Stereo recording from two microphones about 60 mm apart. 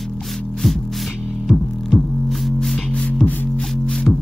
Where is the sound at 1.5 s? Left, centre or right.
Centre.